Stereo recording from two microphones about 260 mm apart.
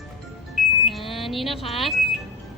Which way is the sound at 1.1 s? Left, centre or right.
Centre.